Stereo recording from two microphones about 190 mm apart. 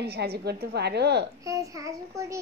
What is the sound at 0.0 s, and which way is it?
A woman's voice, 60° right (ahead or behind).